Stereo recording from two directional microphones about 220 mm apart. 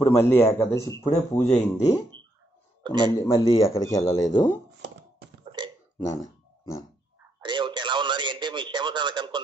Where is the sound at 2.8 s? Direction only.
20° right (ahead or behind).